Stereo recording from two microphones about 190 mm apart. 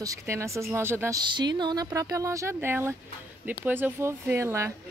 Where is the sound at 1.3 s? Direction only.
25° right (ahead or behind).